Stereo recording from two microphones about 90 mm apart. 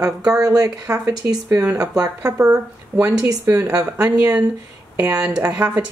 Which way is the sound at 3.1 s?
45° right (ahead or behind).